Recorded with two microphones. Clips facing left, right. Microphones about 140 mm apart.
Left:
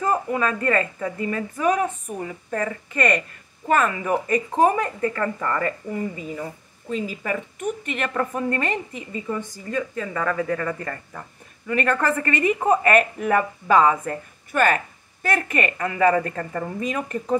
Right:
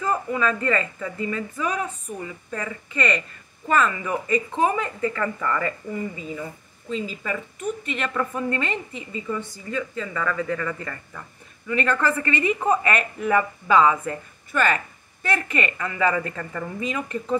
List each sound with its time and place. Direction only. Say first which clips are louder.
0.0 s speech: left 1 dB; 45° left (ahead or behind)